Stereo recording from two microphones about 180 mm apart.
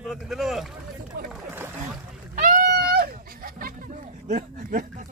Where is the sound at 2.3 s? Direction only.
50° right (ahead or behind).